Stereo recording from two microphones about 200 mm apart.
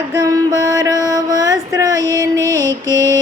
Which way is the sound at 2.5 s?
15° right (ahead or behind).